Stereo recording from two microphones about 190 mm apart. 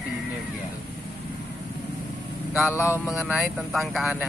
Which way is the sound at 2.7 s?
15° left (ahead or behind).